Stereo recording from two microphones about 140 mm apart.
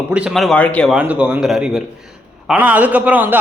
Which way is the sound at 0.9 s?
10° right (ahead or behind).